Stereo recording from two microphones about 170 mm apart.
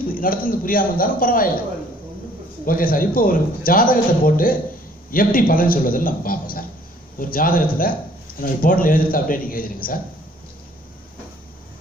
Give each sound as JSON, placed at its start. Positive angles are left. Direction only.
{"t": 0.0, "sound": "a man's voice", "side_deg": 55}
{"t": 2.6, "sound": "a man's voice", "side_deg": 55}